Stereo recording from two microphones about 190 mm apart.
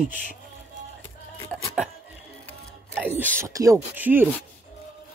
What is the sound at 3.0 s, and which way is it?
Speech, 10° right (ahead or behind).